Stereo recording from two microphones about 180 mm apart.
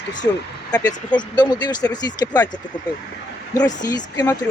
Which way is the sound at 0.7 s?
20° left (ahead or behind).